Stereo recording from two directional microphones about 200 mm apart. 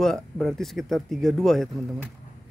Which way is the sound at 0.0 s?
Centre (ahead or behind).